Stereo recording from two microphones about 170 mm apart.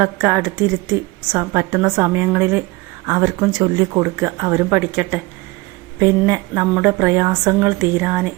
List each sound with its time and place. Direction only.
0.0 s a woman's voice: 15° right (ahead or behind)